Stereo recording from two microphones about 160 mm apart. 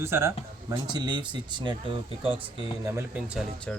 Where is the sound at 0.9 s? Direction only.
25° right (ahead or behind).